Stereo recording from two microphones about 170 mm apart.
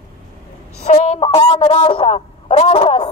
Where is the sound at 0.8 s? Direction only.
40° left (ahead or behind).